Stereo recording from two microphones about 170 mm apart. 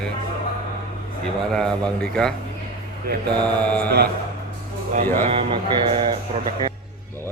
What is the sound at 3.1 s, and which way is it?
Mantra, 65° right (ahead or behind).